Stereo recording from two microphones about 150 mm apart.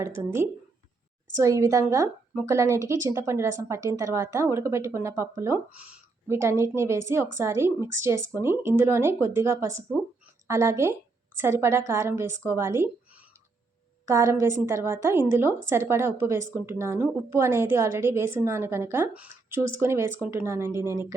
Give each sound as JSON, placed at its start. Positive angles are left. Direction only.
{"t": 1.4, "sound": "a woman's voice", "side_deg": -20}